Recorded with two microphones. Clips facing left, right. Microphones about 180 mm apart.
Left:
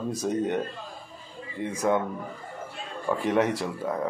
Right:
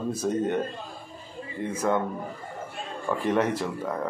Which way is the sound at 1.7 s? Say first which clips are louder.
Left 1 dB; 10° left (ahead or behind).